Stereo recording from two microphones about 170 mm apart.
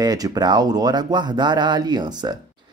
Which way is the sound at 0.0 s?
20° right (ahead or behind).